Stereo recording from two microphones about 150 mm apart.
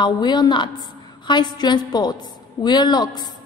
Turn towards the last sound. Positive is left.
turn(degrees=30)  # may be behind; listen again after turning